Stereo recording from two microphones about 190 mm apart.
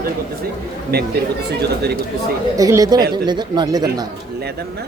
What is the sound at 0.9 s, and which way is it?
Speech, 55° right (ahead or behind).